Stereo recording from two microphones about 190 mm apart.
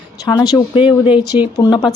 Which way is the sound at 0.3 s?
20° left (ahead or behind).